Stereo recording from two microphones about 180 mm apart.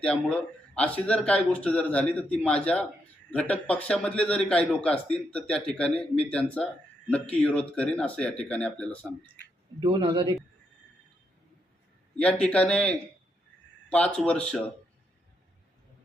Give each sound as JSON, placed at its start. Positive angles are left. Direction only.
{"t": 0.0, "sound": "a man's voice", "side_deg": 5}
{"t": 9.8, "sound": "a man's voice", "side_deg": -25}
{"t": 12.1, "sound": "a man's voice", "side_deg": 5}